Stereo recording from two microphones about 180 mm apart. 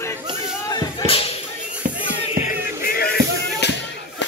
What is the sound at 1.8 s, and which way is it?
Music, 50° right (ahead or behind).